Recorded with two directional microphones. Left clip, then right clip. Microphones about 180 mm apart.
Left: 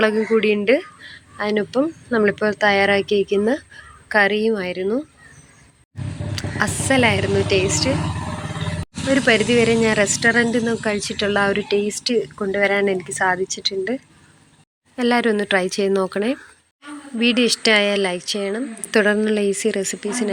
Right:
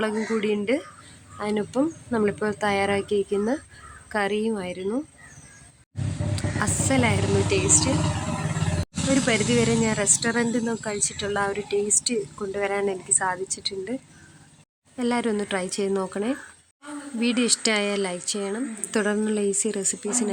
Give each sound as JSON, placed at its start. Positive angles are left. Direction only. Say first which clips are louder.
{"t": 0.0, "sound": "speech", "louder": "left 9 dB", "side_deg": 15}
{"t": 6.3, "sound": "speech", "louder": "left 5 dB", "side_deg": 15}
{"t": 9.1, "sound": "speech", "louder": "left 7 dB", "side_deg": 15}